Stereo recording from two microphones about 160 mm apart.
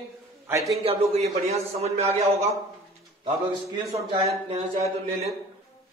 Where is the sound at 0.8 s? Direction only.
40° right (ahead or behind).